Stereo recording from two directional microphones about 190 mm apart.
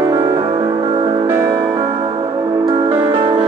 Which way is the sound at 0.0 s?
15° right (ahead or behind).